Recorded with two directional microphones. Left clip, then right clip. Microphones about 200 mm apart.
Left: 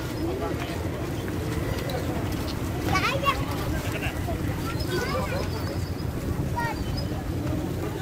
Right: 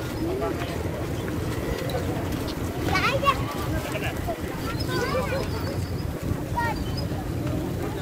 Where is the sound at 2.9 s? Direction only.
35° right (ahead or behind).